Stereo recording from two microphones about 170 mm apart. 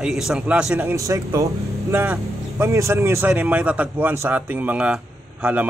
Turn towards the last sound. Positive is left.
turn(degrees=-5)  # may be behind; listen again after turning